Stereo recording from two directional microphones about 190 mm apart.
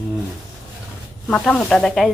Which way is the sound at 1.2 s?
5° left (ahead or behind).